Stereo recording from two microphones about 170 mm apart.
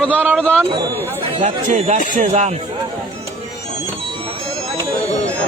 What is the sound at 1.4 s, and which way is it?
Speech, 45° right (ahead or behind).